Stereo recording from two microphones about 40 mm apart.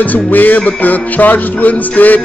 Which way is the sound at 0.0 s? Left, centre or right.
Left.